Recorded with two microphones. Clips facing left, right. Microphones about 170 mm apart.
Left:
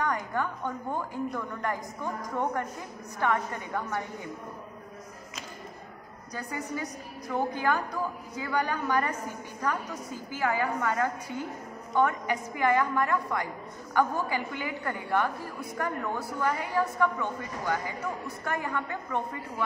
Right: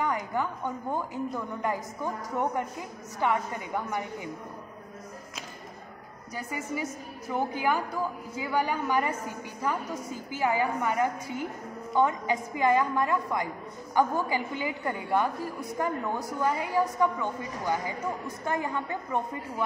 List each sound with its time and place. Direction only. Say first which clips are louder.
0.0 s a woman's voice: right 1 dB; 15° right (ahead or behind)
3.2 s a woman's voice: right 1 dB; 15° right (ahead or behind)
6.3 s a woman's voice: right 1 dB; 10° right (ahead or behind)